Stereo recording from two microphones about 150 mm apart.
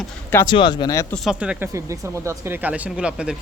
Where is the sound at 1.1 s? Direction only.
Centre (ahead or behind).